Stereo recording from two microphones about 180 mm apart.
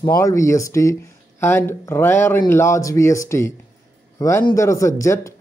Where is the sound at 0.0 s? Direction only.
15° left (ahead or behind).